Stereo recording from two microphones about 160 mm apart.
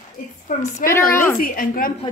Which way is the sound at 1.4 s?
65° left (ahead or behind).